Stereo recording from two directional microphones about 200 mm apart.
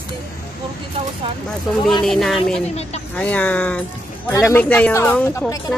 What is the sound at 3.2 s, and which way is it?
Speech, 5° left (ahead or behind).